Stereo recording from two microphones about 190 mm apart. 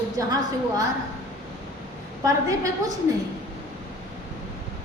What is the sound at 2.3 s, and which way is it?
Speech, 15° right (ahead or behind).